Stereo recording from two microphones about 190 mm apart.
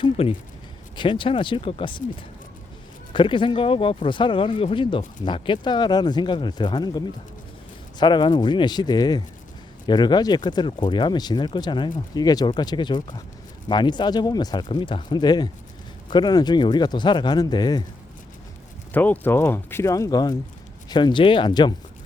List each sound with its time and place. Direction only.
0.0 s a sound: 25° left (ahead or behind)
0.9 s speech: 25° left (ahead or behind)
3.1 s speech: 25° left (ahead or behind)
18.9 s speech: 10° left (ahead or behind)